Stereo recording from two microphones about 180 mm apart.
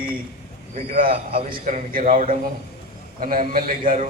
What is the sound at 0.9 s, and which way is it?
A man's voice, 50° right (ahead or behind).